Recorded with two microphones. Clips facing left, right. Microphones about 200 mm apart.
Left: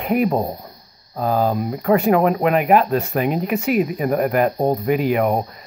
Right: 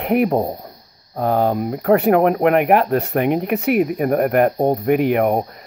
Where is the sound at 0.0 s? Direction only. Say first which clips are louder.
Right 2 dB; 65° right (ahead or behind).